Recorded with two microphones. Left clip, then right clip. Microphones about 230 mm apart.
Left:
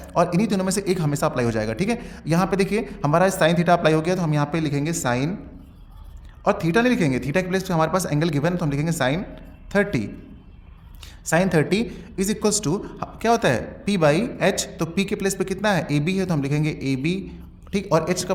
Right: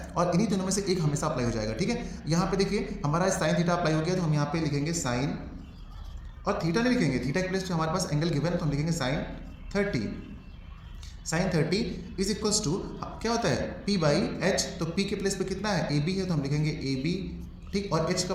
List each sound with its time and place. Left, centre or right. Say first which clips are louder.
0.2 s a man's voice: left 7 dB; left
6.4 s speech: left 8 dB; left
11.3 s speech: left 8 dB; left